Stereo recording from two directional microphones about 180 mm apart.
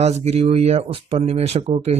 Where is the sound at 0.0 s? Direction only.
35° right (ahead or behind).